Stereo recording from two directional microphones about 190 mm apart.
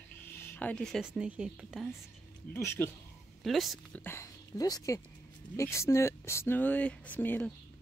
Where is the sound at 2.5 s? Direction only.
15° left (ahead or behind).